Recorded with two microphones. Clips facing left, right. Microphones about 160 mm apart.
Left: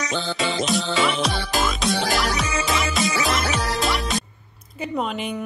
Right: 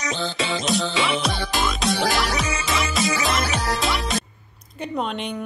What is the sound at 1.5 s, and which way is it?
Music, centre (ahead or behind).